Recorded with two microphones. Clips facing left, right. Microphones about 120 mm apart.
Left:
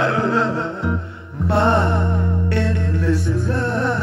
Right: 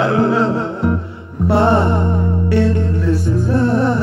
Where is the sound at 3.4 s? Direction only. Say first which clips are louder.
Right 8 dB; 5° right (ahead or behind).